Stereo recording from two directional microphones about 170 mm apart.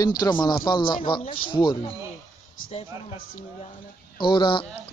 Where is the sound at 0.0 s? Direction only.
25° left (ahead or behind).